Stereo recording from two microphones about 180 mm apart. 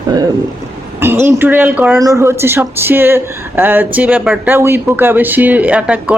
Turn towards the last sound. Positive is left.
turn(degrees=-10)  # may be behind; listen again after turning